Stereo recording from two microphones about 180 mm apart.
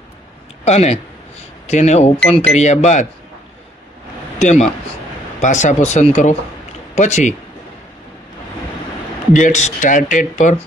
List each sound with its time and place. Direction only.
0.7 s speech: 35° left (ahead or behind)
4.4 s a man's voice: 40° left (ahead or behind)
9.3 s speech: 40° left (ahead or behind)